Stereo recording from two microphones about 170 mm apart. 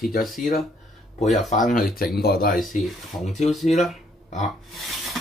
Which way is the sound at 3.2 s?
Centre (ahead or behind).